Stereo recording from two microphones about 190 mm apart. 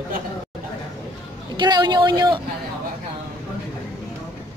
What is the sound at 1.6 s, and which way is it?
Speech, 20° right (ahead or behind).